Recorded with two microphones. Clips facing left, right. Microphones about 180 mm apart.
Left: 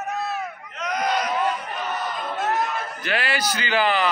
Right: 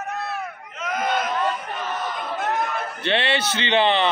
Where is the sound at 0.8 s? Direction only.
5° right (ahead or behind).